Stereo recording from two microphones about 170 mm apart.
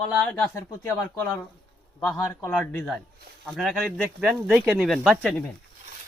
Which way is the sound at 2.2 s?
15° left (ahead or behind).